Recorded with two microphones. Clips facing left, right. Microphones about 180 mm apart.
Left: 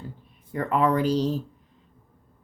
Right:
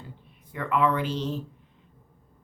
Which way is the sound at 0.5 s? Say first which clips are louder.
Left 2 dB; 40° left (ahead or behind).